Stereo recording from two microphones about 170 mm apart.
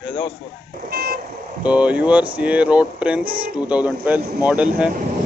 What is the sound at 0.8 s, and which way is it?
Vehicle, 60° right (ahead or behind).